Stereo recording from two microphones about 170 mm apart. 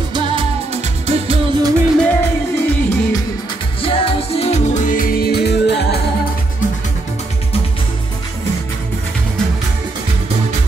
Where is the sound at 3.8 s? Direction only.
30° left (ahead or behind); by 5.7 s 70° left (ahead or behind).